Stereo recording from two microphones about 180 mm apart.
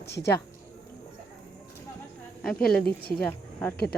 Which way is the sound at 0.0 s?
65° left (ahead or behind).